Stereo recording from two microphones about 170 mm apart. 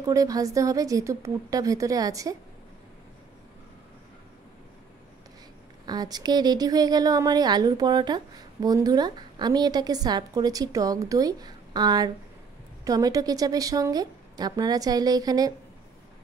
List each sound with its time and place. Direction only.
0.0 s a woman's voice: 20° right (ahead or behind)
5.9 s a woman's voice: 25° right (ahead or behind)